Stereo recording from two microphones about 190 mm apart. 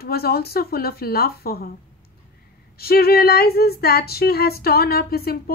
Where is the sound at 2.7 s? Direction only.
55° left (ahead or behind).